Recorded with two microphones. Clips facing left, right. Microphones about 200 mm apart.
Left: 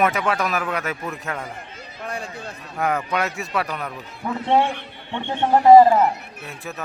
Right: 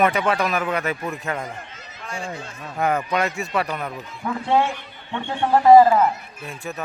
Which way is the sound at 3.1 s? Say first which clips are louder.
Right 1 dB; centre (ahead or behind).